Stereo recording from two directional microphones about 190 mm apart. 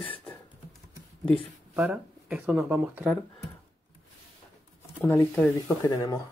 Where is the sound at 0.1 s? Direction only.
10° left (ahead or behind).